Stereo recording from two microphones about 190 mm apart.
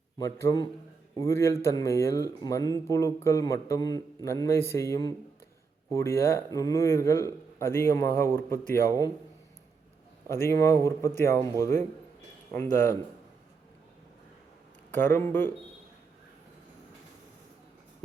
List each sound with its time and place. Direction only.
0.2 s speech: 15° left (ahead or behind)
10.2 s speech: 15° left (ahead or behind)
14.9 s speech: 10° left (ahead or behind)